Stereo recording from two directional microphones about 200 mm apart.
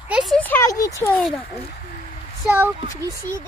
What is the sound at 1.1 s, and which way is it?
Speech, 5° left (ahead or behind).